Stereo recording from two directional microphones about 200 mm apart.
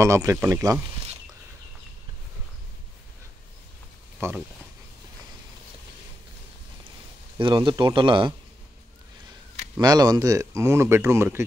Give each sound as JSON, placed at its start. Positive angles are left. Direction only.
{"t": 0.0, "sound": "speech", "side_deg": -15}
{"t": 4.2, "sound": "speech", "side_deg": -15}
{"t": 7.3, "sound": "speech", "side_deg": -25}
{"t": 9.8, "sound": "speech", "side_deg": -20}